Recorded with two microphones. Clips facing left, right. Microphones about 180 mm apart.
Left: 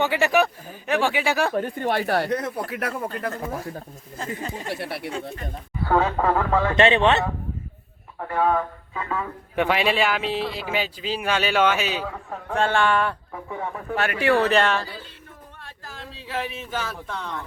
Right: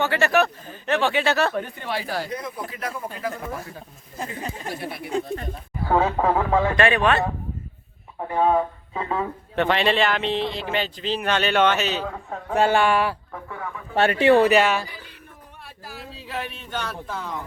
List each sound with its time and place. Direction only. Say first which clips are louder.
0.0 s speech: even; 15° left (ahead or behind)
1.5 s speech: left 4 dB; 45° left (ahead or behind); by 3.1 s 65° left (ahead or behind)
4.7 s speech: left 2 dB; 70° left (ahead or behind)
5.9 s speech: even; 10° right (ahead or behind)
6.7 s speech: left 2 dB; 25° left (ahead or behind)
8.2 s speech: right 2 dB; 20° right (ahead or behind)
9.6 s speech: right 1 dB; 10° left (ahead or behind)
12.1 s speech: right 3 dB; 5° right (ahead or behind)
13.5 s speech: left 4 dB; 25° left (ahead or behind)
13.9 s speech: right 5 dB; 30° right (ahead or behind); by 17.3 s centre (ahead or behind)